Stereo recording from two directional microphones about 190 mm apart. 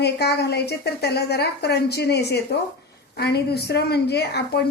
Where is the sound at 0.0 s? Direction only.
60° left (ahead or behind).